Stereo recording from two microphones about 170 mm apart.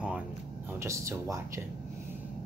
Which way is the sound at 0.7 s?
15° right (ahead or behind).